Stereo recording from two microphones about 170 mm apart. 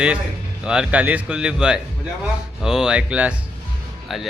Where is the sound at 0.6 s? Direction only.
5° right (ahead or behind).